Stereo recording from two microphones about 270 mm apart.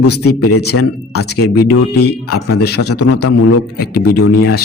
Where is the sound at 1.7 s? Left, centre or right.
Left.